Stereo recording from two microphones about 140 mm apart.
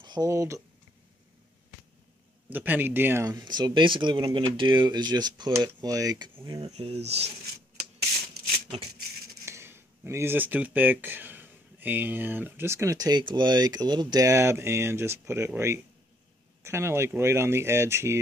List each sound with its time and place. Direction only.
0.0 s speech: 30° right (ahead or behind)
2.5 s speech: 15° right (ahead or behind)
6.6 s speech: 45° right (ahead or behind)
9.5 s speech: 20° right (ahead or behind)